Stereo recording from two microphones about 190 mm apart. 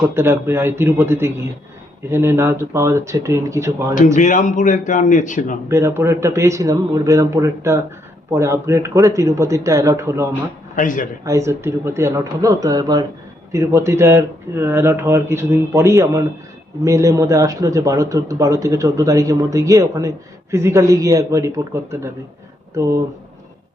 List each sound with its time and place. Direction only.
0.1 s a man's voice: 10° right (ahead or behind)
3.9 s a man's voice: 40° left (ahead or behind)
5.6 s a man's voice: 15° right (ahead or behind)
10.8 s a man's voice: 45° left (ahead or behind)
11.3 s a man's voice: 15° right (ahead or behind)